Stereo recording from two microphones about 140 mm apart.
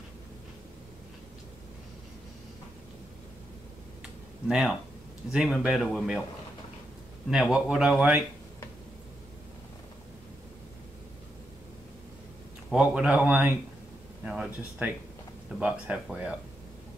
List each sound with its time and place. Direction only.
4.5 s speech: 5° right (ahead or behind)
7.2 s speech: 5° right (ahead or behind)
12.7 s speech: 10° right (ahead or behind)